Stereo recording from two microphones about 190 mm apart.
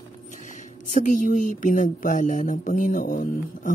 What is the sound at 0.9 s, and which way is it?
Speech, 45° left (ahead or behind).